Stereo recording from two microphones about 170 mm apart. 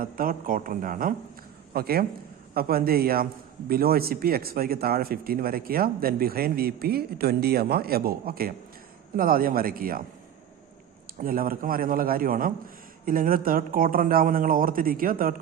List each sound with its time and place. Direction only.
0.0 s speech: 55° right (ahead or behind)
11.2 s speech: 55° right (ahead or behind)